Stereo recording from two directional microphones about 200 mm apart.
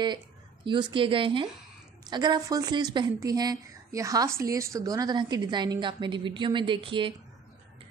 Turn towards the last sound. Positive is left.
turn(degrees=-25)  # may be behind; listen again after turning